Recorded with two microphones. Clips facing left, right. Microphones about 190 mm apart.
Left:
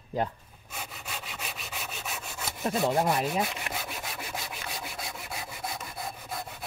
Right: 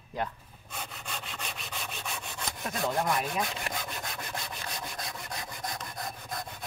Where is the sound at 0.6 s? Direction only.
5° left (ahead or behind).